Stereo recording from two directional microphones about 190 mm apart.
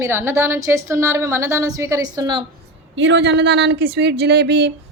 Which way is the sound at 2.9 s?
70° right (ahead or behind).